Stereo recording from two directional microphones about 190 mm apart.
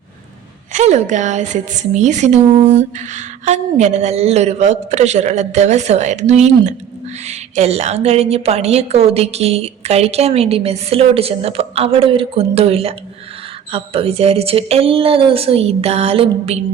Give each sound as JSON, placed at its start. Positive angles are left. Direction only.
{"t": 0.7, "sound": "a woman's voice", "side_deg": -40}